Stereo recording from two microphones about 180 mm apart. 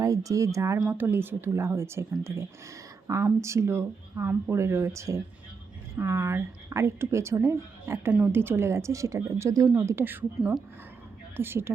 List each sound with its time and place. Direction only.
0.0 s speech: 20° right (ahead or behind)